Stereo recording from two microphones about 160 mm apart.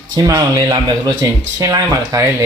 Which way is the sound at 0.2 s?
20° right (ahead or behind).